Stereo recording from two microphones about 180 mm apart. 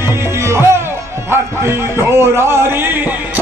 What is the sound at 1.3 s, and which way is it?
Speech, 15° right (ahead or behind).